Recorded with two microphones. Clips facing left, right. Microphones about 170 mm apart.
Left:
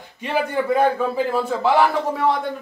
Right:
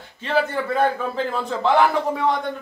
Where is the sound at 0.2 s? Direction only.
15° left (ahead or behind).